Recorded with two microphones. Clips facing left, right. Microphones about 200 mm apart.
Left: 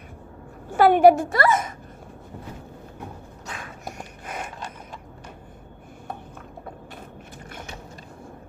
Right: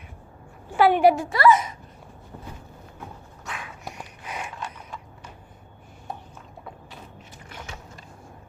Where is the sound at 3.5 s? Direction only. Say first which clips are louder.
Even; 45° left (ahead or behind).